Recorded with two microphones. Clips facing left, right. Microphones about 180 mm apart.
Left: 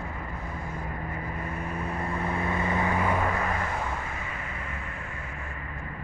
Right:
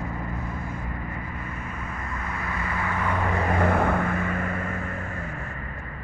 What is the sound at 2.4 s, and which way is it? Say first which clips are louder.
Vehicle: left 3 dB; 25° left (ahead or behind).